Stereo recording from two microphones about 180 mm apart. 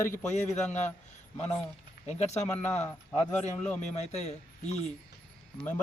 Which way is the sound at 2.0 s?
35° left (ahead or behind).